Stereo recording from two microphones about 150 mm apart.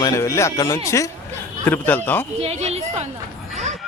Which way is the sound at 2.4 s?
45° right (ahead or behind).